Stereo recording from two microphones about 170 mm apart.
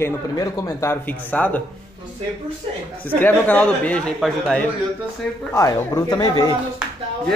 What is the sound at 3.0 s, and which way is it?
Speech, 10° left (ahead or behind).